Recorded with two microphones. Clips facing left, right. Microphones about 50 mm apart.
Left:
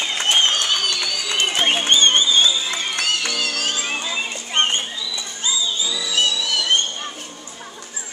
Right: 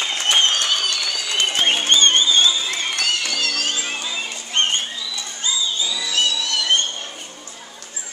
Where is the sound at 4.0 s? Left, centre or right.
Centre.